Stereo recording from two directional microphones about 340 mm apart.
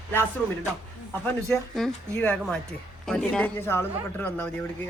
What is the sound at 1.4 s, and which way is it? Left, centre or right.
Speech, centre.